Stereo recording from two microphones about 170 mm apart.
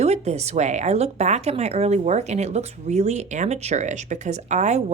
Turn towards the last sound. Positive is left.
turn(degrees=-45)  # may be behind; listen again after turning